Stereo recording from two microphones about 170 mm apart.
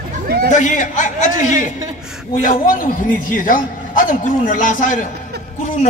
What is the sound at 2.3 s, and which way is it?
A man's voice, 50° left (ahead or behind).